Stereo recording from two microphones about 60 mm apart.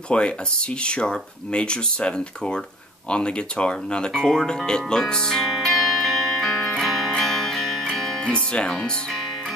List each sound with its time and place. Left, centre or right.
0.1 s speech: centre
6.8 s music: centre
8.7 s speech: centre